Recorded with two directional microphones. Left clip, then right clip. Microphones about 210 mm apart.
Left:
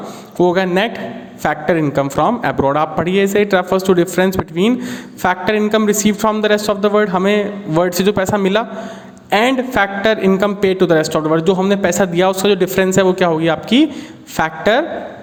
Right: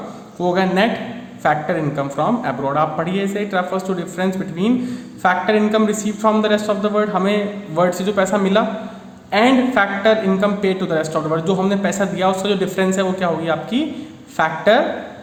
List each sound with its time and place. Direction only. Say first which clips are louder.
0.3 s a man's voice: left 3 dB; 45° left (ahead or behind)